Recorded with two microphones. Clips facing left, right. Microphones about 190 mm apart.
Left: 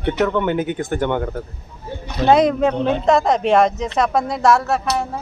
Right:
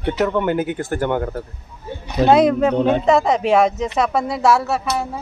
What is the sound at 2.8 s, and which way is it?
Speech, 50° right (ahead or behind).